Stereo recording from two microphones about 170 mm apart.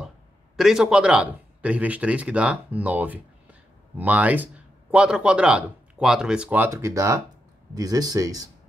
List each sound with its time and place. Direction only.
0.6 s speech: 5° right (ahead or behind); by 8.5 s 20° right (ahead or behind)